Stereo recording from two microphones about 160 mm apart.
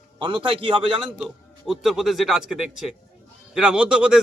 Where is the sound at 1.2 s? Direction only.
Centre (ahead or behind).